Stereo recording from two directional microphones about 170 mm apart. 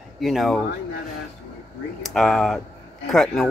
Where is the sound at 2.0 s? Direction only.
Centre (ahead or behind).